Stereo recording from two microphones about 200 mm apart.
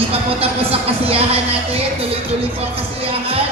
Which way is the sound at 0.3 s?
30° right (ahead or behind).